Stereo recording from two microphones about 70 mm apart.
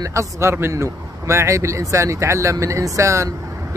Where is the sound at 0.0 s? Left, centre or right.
Right.